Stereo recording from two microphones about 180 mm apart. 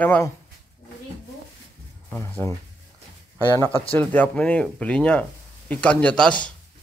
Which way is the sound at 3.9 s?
10° left (ahead or behind).